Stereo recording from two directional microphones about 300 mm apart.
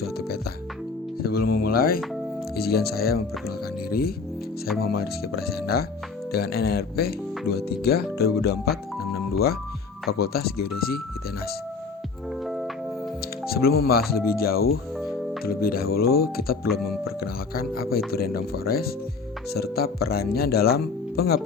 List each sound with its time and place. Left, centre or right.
1.2 s speech: left
12.5 s music: centre
13.7 s speech: left
14.9 s music: centre
15.4 s speech: left